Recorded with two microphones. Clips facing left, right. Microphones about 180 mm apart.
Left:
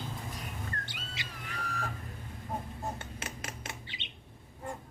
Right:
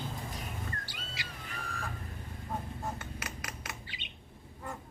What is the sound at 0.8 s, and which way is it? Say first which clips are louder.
Bird: left 1 dB; 20° left (ahead or behind).